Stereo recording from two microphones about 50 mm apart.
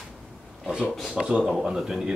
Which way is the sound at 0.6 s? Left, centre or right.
Centre.